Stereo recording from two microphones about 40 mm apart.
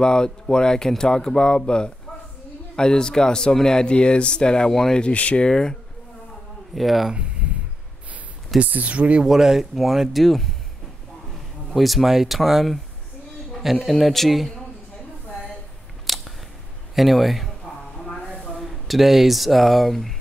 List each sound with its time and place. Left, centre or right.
0.0 s speech: centre
2.7 s speech: centre
4.6 s speech: centre
5.1 s speech: left
5.5 s speech: centre
6.7 s speech: centre
8.6 s speech: right
9.2 s speech: centre
10.2 s speech: centre
11.7 s speech: centre
16.1 s a sound: centre
16.9 s speech: centre
17.7 s a sound: left
18.6 s speech: centre